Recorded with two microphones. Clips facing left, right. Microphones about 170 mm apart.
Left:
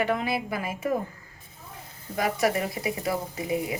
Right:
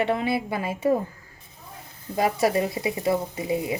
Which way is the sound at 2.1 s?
30° right (ahead or behind).